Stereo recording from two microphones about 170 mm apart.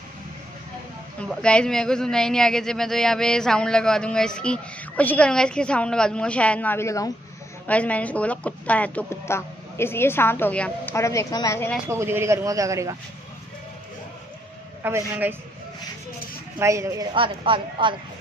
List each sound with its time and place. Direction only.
1.2 s speech: 5° left (ahead or behind)
11.9 s a man's voice: 15° right (ahead or behind)
14.8 s a man's voice: 15° right (ahead or behind)
16.5 s a man's voice: 15° right (ahead or behind)
17.1 s a woman's voice: 30° right (ahead or behind)